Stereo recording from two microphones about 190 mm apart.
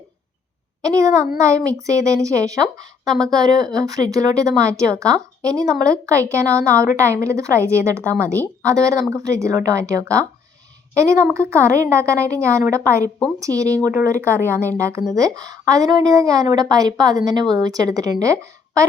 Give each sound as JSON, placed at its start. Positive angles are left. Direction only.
{"t": 0.8, "sound": "a woman's voice", "side_deg": -20}